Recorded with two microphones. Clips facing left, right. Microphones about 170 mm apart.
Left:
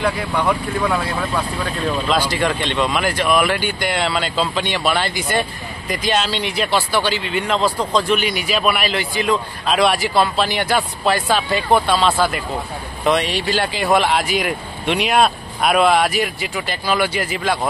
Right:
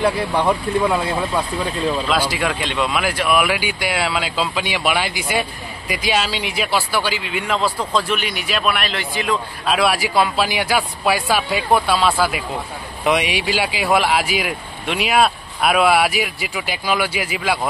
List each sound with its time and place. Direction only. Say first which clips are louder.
0.2 s speech: right 1 dB; 30° right (ahead or behind)
0.7 s speech: right 2 dB; 20° right (ahead or behind)
2.0 s speech: left 1 dB; 5° right (ahead or behind)